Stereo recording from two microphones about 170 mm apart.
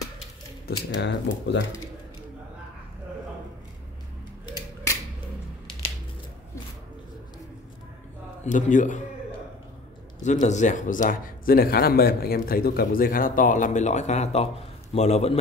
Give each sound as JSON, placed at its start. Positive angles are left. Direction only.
{"t": 0.7, "sound": "speech", "side_deg": 90}
{"t": 8.5, "sound": "speech", "side_deg": 45}
{"t": 10.2, "sound": "a man's voice", "side_deg": 45}